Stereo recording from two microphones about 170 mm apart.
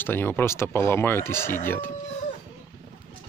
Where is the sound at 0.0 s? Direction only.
10° left (ahead or behind).